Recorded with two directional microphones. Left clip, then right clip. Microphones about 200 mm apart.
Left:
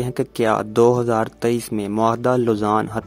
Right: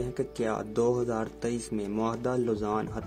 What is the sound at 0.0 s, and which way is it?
Speech, 50° left (ahead or behind).